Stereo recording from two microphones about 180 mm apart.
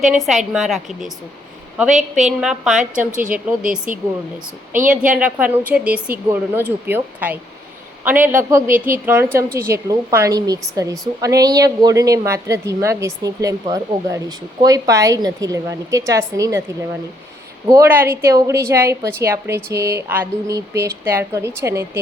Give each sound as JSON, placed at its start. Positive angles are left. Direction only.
{"t": 0.2, "sound": "a woman's voice", "side_deg": 0}
{"t": 1.9, "sound": "a woman's voice", "side_deg": -40}
{"t": 2.4, "sound": "a woman's voice", "side_deg": -5}
{"t": 3.6, "sound": "a woman's voice", "side_deg": -50}
{"t": 5.1, "sound": "a woman's voice", "side_deg": -10}
{"t": 17.7, "sound": "a woman's voice", "side_deg": -15}